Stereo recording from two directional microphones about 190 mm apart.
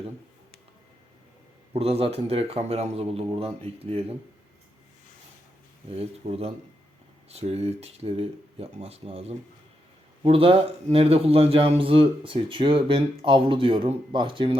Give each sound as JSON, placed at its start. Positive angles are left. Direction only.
{"t": 1.7, "sound": "a man's voice", "side_deg": -30}
{"t": 5.9, "sound": "a man's voice", "side_deg": -30}